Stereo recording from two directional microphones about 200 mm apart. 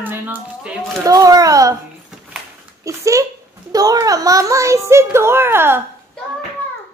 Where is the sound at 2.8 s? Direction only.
15° right (ahead or behind).